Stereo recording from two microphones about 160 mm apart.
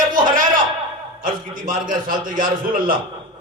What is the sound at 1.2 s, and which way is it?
A man's voice, 60° right (ahead or behind).